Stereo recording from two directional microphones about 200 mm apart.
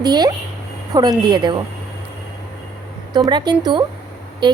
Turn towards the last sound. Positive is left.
turn(degrees=-20)  # may be behind; listen again after turning